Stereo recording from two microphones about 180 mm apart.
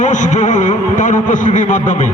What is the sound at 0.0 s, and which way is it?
A man's voice, 40° left (ahead or behind).